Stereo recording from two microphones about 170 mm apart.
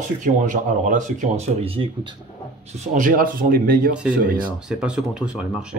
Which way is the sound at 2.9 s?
55° right (ahead or behind).